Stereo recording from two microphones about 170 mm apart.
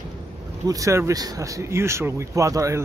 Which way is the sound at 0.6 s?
20° right (ahead or behind).